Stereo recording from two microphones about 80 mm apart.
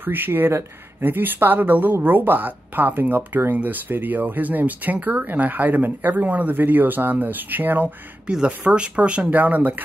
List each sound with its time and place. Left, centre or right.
0.0 s speech: right